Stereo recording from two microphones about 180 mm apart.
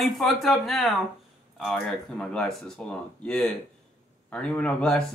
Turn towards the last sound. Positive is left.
turn(degrees=5)  # may be behind; listen again after turning